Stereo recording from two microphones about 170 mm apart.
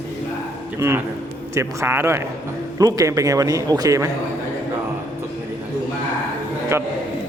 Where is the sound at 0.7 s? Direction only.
15° right (ahead or behind).